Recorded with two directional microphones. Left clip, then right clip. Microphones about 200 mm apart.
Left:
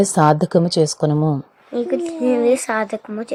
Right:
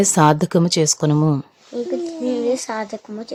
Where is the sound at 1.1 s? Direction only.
20° right (ahead or behind).